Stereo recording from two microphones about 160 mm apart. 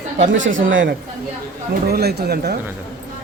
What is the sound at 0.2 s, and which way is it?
Speech, 90° right.